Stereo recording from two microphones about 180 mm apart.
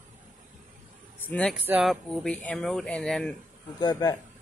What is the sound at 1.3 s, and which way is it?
Speech, 5° left (ahead or behind).